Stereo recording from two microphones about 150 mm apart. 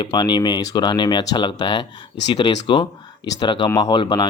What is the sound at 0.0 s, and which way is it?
Speech, 30° left (ahead or behind).